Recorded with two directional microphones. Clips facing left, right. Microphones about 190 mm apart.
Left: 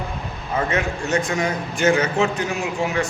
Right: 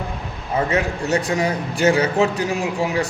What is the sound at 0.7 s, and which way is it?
A man's voice, 35° right (ahead or behind).